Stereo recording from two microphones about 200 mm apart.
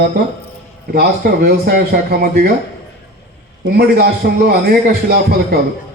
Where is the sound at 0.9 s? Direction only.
50° right (ahead or behind).